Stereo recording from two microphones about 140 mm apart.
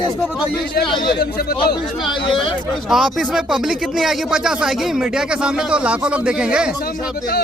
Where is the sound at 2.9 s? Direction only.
Centre (ahead or behind).